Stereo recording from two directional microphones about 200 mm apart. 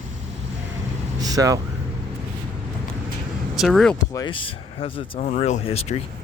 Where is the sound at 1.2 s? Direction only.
20° right (ahead or behind).